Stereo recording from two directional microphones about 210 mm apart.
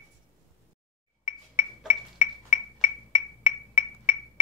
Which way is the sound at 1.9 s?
40° left (ahead or behind).